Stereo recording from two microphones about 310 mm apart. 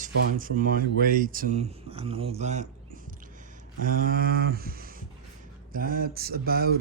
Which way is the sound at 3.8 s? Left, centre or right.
Right.